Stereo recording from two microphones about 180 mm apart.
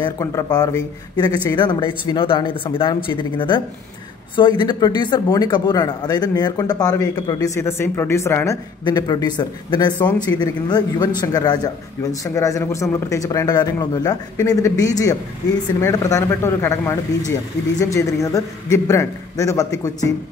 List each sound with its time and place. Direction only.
0.0 s speech: 15° left (ahead or behind)
9.9 s speech: 10° left (ahead or behind)
10.2 s speech: 20° left (ahead or behind)